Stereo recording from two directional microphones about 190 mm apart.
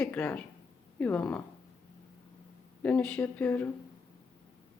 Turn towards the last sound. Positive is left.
turn(degrees=10)  # may be behind; listen again after turning